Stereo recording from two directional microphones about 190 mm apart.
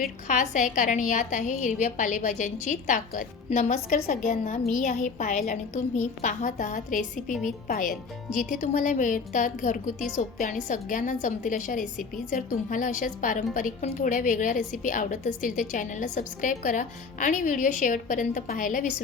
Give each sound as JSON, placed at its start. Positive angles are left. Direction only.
{"t": 0.3, "sound": "a woman's voice", "side_deg": 40}
{"t": 8.4, "sound": "speech", "side_deg": -5}
{"t": 8.6, "sound": "a woman's voice", "side_deg": 40}